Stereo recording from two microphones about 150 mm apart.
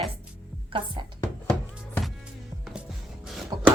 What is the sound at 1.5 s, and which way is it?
Music, 5° left (ahead or behind).